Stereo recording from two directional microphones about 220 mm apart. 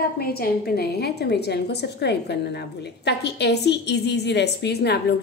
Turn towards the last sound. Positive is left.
turn(degrees=50)  # may be behind; listen again after turning